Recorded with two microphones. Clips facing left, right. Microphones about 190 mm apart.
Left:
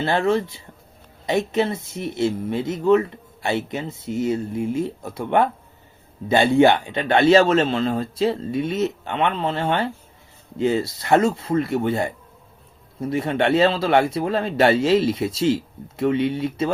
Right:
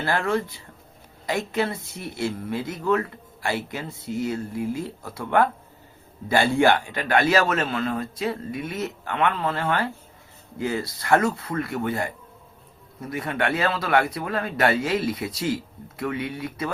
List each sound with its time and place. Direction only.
0.0 s speech: 25° left (ahead or behind)